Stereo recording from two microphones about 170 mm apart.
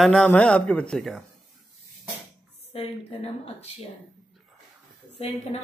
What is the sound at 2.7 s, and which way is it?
Speech, 35° left (ahead or behind).